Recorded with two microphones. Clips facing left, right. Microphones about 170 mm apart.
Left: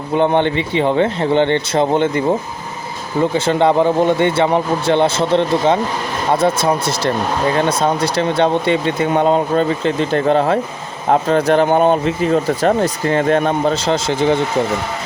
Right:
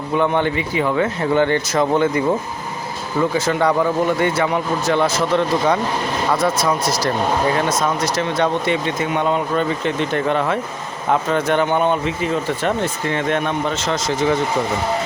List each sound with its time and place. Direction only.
0.2 s speech: 25° left (ahead or behind)